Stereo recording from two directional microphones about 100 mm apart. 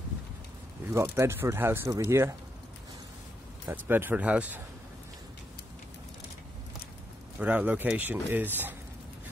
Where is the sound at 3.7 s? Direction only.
20° right (ahead or behind).